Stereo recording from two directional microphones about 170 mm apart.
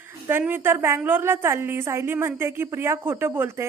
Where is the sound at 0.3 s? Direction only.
10° right (ahead or behind).